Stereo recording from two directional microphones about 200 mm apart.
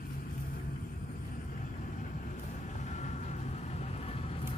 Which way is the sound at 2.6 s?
35° left (ahead or behind).